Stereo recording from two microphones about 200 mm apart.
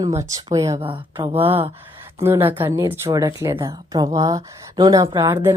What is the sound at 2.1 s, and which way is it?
Speech, 15° right (ahead or behind).